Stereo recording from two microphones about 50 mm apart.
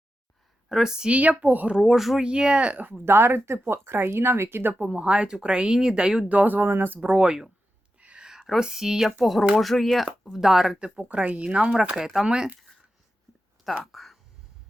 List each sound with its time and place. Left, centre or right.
0.7 s speech: centre
1.1 s speech: right
1.8 s speech: centre
2.2 s speech: centre
3.0 s speech: right
4.9 s speech: centre
6.2 s speech: right
7.9 s a sound: right
8.4 s speech: centre
10.8 s speech: centre
13.9 s a sound: centre